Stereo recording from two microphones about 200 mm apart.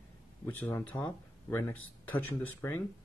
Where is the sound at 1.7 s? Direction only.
90° left.